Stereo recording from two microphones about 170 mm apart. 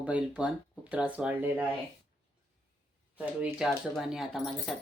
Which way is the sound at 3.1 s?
10° right (ahead or behind).